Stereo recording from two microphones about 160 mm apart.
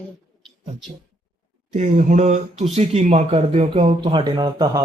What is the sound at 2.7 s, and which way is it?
Speech, 45° right (ahead or behind).